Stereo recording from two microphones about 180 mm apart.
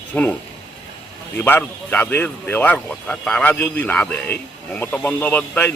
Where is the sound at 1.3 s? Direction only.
10° left (ahead or behind).